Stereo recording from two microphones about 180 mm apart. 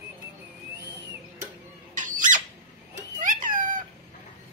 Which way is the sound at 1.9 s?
45° right (ahead or behind).